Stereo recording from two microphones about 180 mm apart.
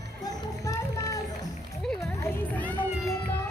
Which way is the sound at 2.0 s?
15° left (ahead or behind).